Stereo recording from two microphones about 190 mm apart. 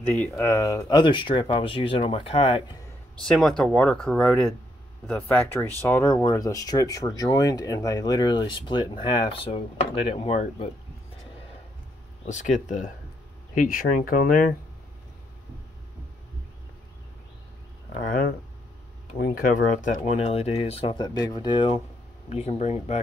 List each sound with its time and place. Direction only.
0.0 s speech: 10° left (ahead or behind); by 2.6 s 30° left (ahead or behind)
3.2 s speech: centre (ahead or behind); by 10.7 s 30° left (ahead or behind)
12.3 s speech: 40° left (ahead or behind)
18.0 s speech: 45° left (ahead or behind)